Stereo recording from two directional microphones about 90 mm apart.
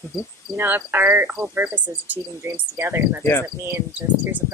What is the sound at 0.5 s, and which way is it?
Speech, 25° right (ahead or behind).